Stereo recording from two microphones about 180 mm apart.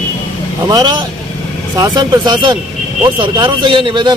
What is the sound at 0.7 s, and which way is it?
Speech, 25° right (ahead or behind).